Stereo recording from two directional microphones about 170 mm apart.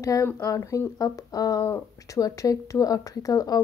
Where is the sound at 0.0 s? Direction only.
15° left (ahead or behind).